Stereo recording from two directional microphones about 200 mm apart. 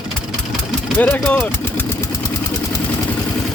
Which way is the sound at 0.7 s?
Centre (ahead or behind).